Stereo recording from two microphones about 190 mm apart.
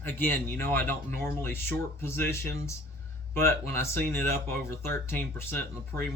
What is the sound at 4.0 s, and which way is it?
Speech, 55° right (ahead or behind).